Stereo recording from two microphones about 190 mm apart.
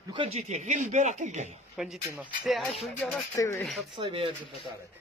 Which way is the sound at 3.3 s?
15° left (ahead or behind).